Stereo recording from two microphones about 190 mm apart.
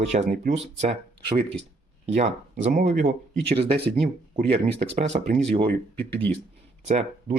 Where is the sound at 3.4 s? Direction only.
30° right (ahead or behind).